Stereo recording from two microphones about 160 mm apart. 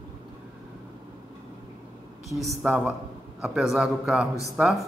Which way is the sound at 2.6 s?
10° right (ahead or behind).